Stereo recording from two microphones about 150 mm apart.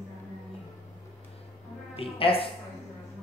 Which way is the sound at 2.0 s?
40° left (ahead or behind).